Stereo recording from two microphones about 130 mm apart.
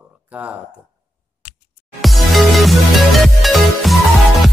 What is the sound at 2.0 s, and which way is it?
Music, centre (ahead or behind).